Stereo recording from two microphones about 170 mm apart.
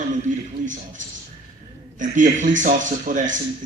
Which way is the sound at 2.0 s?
50° right (ahead or behind).